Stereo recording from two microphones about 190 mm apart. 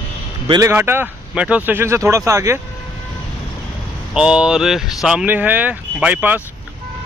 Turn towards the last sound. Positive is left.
turn(degrees=-10)  # may be behind; listen again after turning